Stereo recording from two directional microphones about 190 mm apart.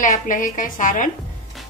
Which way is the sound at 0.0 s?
45° left (ahead or behind).